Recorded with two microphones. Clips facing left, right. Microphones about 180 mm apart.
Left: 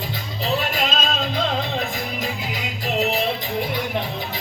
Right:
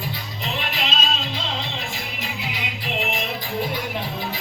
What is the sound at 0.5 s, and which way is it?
Music, 45° left (ahead or behind).